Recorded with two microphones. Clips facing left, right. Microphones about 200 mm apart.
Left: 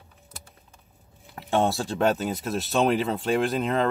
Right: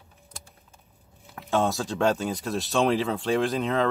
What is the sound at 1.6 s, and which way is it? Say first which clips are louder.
Speech: left 1 dB; 30° left (ahead or behind).